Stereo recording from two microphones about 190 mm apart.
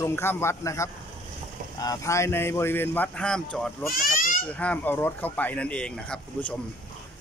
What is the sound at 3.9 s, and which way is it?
Children playing, 45° left (ahead or behind).